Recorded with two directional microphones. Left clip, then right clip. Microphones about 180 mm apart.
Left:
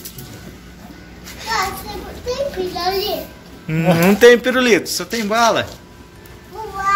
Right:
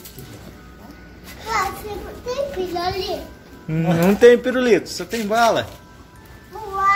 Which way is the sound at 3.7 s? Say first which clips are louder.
Left 4 dB; 5° right (ahead or behind).